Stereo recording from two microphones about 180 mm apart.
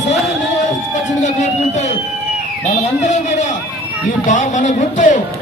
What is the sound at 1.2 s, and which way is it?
Speech, 40° left (ahead or behind).